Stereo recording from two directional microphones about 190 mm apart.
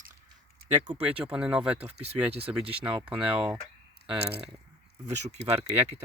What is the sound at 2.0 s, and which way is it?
Speech, 35° right (ahead or behind).